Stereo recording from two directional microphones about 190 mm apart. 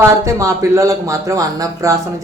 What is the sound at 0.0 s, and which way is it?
Speech, 15° right (ahead or behind).